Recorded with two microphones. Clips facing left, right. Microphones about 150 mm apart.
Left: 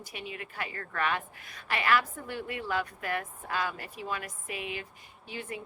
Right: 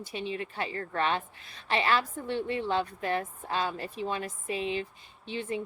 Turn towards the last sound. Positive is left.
turn(degrees=-25)  # may be behind; listen again after turning